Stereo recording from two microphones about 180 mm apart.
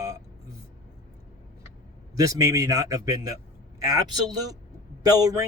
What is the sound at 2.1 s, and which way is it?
Speech, 20° right (ahead or behind).